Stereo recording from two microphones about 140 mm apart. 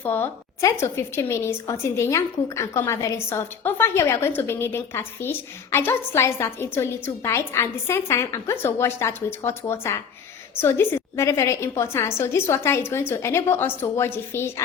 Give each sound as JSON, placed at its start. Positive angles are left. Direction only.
{"t": 0.0, "sound": "a woman's voice", "side_deg": 15}